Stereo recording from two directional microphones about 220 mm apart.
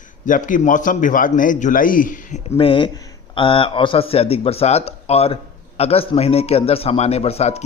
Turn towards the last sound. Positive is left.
turn(degrees=30)  # may be behind; listen again after turning